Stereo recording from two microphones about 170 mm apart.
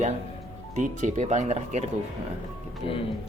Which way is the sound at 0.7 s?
45° right (ahead or behind).